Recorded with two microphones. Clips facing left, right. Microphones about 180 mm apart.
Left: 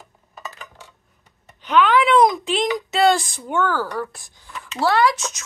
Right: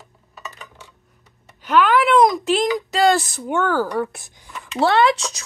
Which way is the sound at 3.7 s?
15° right (ahead or behind).